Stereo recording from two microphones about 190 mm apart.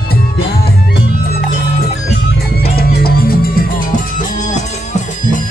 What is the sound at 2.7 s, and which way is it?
Music, 55° left (ahead or behind).